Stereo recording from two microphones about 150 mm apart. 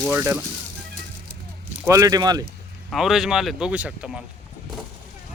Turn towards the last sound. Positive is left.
turn(degrees=-5)  # may be behind; listen again after turning